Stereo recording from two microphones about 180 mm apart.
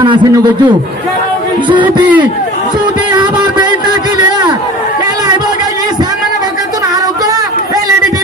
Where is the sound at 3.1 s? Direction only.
25° right (ahead or behind).